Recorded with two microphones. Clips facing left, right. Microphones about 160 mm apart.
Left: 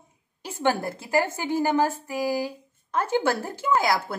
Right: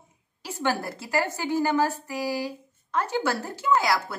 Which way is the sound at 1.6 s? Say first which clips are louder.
Left 1 dB; 20° left (ahead or behind).